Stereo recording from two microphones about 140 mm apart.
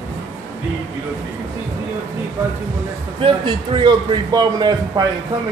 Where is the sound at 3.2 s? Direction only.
35° right (ahead or behind).